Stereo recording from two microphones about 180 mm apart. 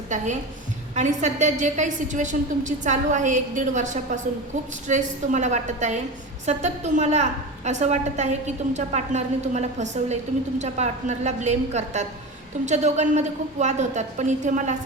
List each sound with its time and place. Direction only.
0.1 s a woman's voice: 45° right (ahead or behind)